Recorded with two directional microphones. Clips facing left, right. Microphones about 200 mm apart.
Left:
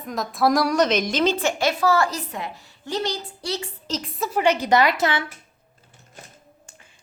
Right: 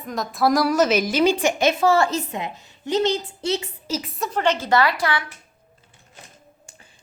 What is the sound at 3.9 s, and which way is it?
A woman's voice, centre (ahead or behind).